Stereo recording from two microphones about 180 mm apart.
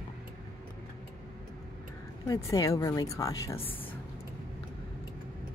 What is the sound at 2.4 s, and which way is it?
Speech, 15° left (ahead or behind).